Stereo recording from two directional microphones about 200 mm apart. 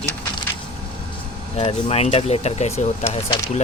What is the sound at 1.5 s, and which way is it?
Speech, 30° left (ahead or behind).